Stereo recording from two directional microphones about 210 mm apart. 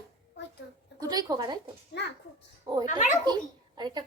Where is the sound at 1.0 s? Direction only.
20° right (ahead or behind).